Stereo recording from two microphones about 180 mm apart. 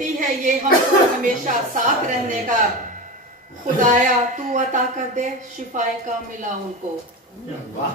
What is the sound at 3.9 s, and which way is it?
A woman's voice, 45° right (ahead or behind).